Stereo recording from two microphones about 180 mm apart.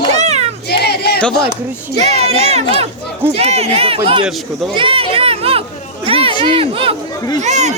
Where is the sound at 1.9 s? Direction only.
35° right (ahead or behind).